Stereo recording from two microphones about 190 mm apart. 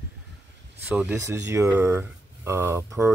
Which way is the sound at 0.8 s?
5° right (ahead or behind).